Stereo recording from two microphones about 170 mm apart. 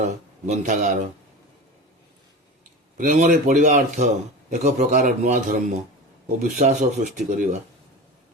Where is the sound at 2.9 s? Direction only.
50° right (ahead or behind).